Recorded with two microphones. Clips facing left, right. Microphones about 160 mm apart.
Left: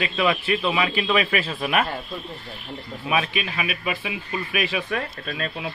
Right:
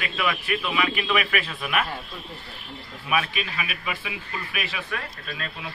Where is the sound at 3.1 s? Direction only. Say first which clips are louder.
Left 2 dB; 20° left (ahead or behind).